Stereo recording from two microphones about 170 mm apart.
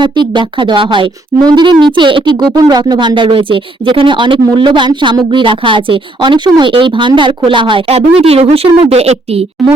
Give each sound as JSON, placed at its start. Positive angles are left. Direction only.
{"t": 0.0, "sound": "a woman's voice", "side_deg": -30}
{"t": 9.6, "sound": "a woman's voice", "side_deg": 0}